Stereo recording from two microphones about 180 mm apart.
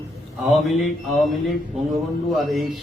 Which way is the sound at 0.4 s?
Centre (ahead or behind).